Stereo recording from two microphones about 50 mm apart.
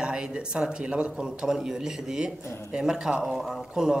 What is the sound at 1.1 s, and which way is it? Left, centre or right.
Speech, centre.